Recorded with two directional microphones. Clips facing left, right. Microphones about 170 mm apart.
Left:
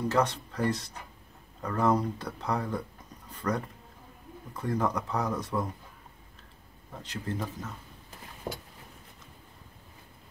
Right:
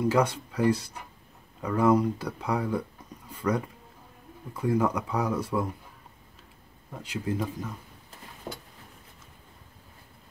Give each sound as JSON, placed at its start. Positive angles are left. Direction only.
{"t": 0.0, "sound": "speech", "side_deg": -10}
{"t": 6.9, "sound": "speech", "side_deg": -10}
{"t": 8.5, "sound": "a sound", "side_deg": 25}